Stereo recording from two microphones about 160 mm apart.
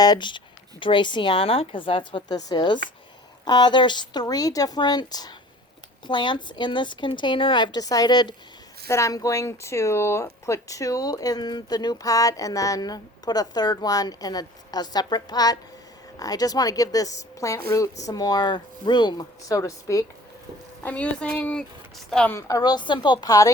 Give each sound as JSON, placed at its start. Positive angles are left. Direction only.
{"t": 0.0, "sound": "a woman's voice", "side_deg": 25}
{"t": 20.8, "sound": "a woman's voice", "side_deg": 10}
{"t": 22.4, "sound": "speech", "side_deg": 20}